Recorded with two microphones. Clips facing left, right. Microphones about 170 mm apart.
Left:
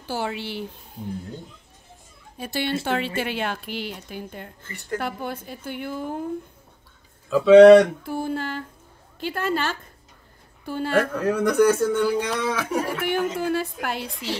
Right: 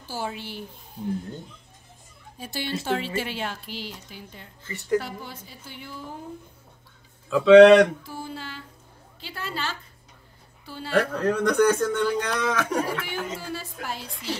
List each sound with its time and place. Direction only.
0.1 s a woman's voice: 75° left (ahead or behind)
2.3 s speech: 65° left (ahead or behind)
7.2 s speech: 5° left (ahead or behind)
8.0 s a sound: 55° left (ahead or behind)
10.6 s speech: 50° left (ahead or behind)
11.2 s speech: 10° left (ahead or behind)
13.0 s speech: 60° left (ahead or behind)